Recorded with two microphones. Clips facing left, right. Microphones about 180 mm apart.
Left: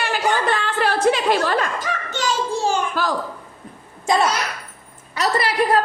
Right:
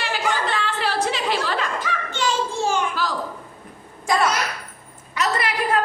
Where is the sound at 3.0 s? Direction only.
50° left (ahead or behind).